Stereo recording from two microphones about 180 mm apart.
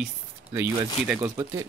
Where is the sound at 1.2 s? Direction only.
20° right (ahead or behind).